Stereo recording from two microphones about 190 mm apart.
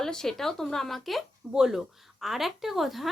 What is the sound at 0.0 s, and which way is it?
Speech, 5° left (ahead or behind).